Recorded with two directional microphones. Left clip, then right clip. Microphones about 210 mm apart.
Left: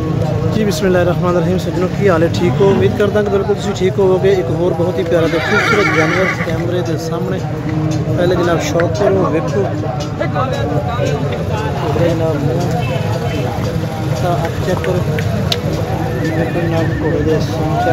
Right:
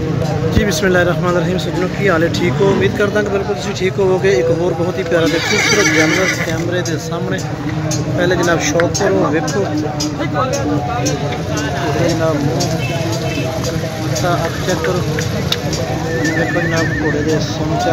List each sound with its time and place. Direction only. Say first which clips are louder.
0.6 s speech: even; 5° left (ahead or behind)
5.6 s neigh: even; 55° right (ahead or behind)
8.2 s speech: even; centre (ahead or behind)